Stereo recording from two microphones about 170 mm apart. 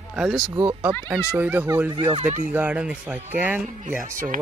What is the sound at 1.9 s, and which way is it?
Speech, 25° right (ahead or behind).